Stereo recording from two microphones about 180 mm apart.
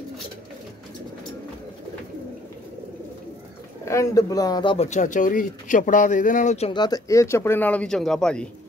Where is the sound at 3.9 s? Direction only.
15° left (ahead or behind); by 6.7 s 40° left (ahead or behind).